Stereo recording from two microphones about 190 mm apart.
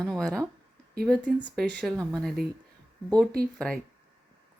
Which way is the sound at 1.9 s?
15° right (ahead or behind).